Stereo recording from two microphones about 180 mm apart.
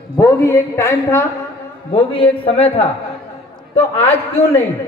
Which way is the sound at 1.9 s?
30° left (ahead or behind).